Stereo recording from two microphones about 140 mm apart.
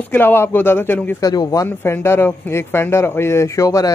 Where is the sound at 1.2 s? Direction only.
25° left (ahead or behind).